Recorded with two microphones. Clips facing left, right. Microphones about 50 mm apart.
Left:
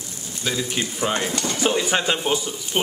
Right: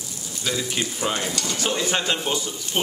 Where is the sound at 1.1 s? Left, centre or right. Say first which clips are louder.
Left 3 dB; left.